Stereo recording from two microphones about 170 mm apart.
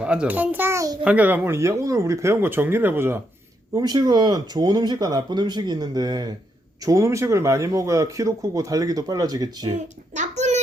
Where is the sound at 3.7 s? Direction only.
25° right (ahead or behind).